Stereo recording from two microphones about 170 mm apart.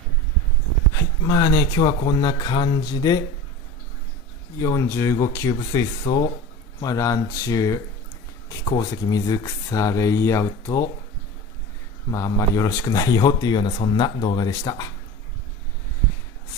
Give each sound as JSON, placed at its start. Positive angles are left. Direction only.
{"t": 1.2, "sound": "speech", "side_deg": 25}
{"t": 4.6, "sound": "speech", "side_deg": 20}
{"t": 12.1, "sound": "speech", "side_deg": 20}